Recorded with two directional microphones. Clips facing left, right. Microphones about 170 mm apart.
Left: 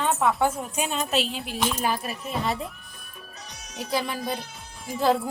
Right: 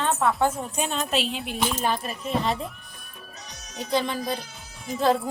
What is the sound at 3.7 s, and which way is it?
A woman's voice, 5° left (ahead or behind).